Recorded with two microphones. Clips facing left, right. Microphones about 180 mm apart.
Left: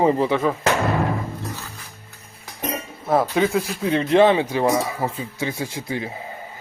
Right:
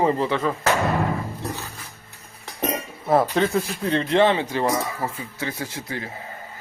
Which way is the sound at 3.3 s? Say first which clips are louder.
Left 1 dB; 5° left (ahead or behind).